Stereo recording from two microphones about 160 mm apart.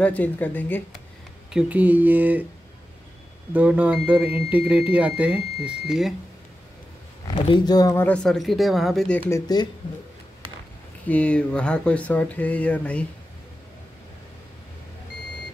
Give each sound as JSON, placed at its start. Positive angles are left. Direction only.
{"t": 0.0, "sound": "speech", "side_deg": 10}
{"t": 1.5, "sound": "speech", "side_deg": -5}
{"t": 3.5, "sound": "speech", "side_deg": -10}
{"t": 7.2, "sound": "speech", "side_deg": 30}
{"t": 8.0, "sound": "speech", "side_deg": 5}
{"t": 9.3, "sound": "speech", "side_deg": 25}
{"t": 11.1, "sound": "speech", "side_deg": 5}